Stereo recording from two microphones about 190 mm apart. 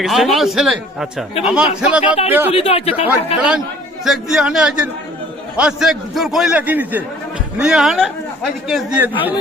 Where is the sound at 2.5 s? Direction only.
30° left (ahead or behind).